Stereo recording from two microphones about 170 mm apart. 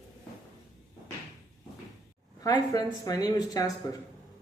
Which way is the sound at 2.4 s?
20° left (ahead or behind).